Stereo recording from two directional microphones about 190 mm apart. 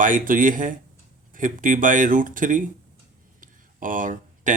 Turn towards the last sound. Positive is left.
turn(degrees=-45)  # may be behind; listen again after turning